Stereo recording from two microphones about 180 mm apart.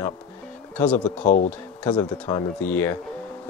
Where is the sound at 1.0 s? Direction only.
45° left (ahead or behind).